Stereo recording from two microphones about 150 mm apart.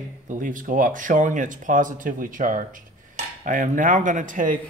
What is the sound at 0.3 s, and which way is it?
Speech, 60° right (ahead or behind).